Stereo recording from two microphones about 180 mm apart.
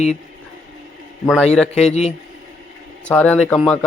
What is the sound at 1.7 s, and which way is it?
Speech, 35° left (ahead or behind).